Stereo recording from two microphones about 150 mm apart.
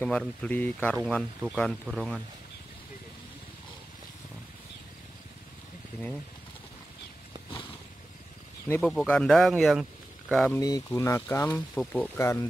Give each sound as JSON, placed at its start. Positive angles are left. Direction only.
{"t": 0.0, "sound": "speech", "side_deg": 5}
{"t": 8.8, "sound": "speech", "side_deg": 5}
{"t": 10.5, "sound": "speech", "side_deg": 25}